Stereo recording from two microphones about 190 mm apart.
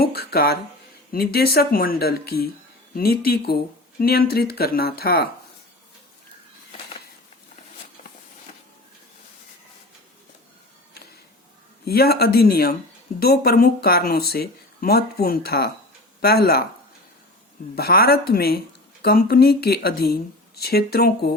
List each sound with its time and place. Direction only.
0.0 s speech: 55° left (ahead or behind)
11.9 s speech: 55° left (ahead or behind)
17.7 s speech: 55° left (ahead or behind)